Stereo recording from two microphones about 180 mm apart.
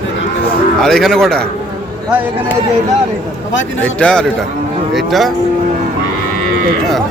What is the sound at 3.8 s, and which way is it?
A man's voice, 5° left (ahead or behind).